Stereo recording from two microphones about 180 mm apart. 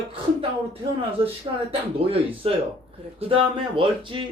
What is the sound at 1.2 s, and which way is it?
Speech, 30° right (ahead or behind).